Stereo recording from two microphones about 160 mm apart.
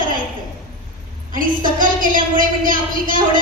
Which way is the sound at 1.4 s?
60° right (ahead or behind).